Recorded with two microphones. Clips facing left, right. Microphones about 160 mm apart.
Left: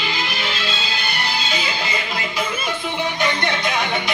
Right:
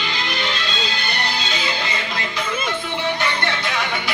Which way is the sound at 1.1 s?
10° left (ahead or behind).